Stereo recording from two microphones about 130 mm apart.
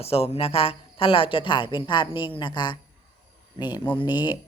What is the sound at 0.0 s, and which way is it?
A woman's voice, 50° left (ahead or behind).